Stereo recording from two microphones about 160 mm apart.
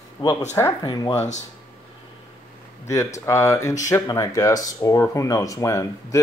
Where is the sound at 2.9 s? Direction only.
20° left (ahead or behind).